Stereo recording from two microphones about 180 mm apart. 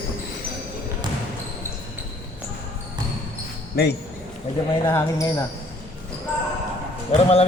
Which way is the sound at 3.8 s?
60° left (ahead or behind).